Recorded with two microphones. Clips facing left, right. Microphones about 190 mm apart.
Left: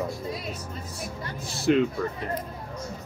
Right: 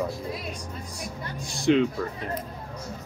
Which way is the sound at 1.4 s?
5° left (ahead or behind).